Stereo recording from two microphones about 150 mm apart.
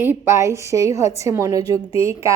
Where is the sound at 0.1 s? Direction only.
20° right (ahead or behind).